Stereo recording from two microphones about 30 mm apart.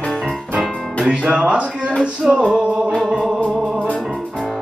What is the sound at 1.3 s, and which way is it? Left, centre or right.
Speech, right.